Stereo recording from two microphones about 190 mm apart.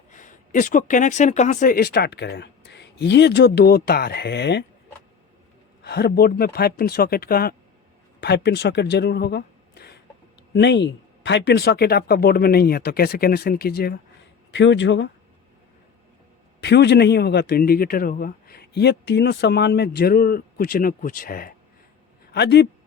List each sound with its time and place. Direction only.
0.1 s speech: 40° left (ahead or behind); by 4.6 s 65° left (ahead or behind)
5.8 s a man's voice: 60° left (ahead or behind)
14.5 s speech: 70° left (ahead or behind)
16.6 s a man's voice: 60° left (ahead or behind)
22.3 s speech: 60° left (ahead or behind)